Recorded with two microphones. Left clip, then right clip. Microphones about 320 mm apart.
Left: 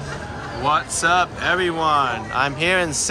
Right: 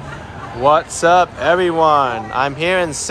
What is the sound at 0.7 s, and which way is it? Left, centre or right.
Speech, centre.